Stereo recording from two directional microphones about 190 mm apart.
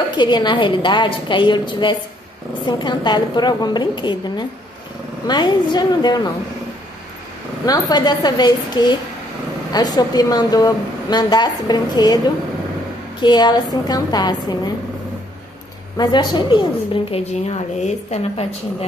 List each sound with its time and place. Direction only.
0.1 s a woman's voice: 25° left (ahead or behind)
7.6 s a woman's voice: 20° left (ahead or behind)
13.2 s a woman's voice: 20° left (ahead or behind)
16.0 s a woman's voice: 25° left (ahead or behind)